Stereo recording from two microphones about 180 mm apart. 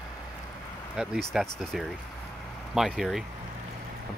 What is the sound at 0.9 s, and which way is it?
Speech, 5° right (ahead or behind).